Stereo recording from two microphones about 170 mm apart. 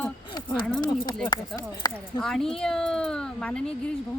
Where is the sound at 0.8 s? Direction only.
25° left (ahead or behind).